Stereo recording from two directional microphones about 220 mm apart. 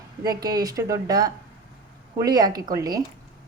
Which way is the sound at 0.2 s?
15° right (ahead or behind).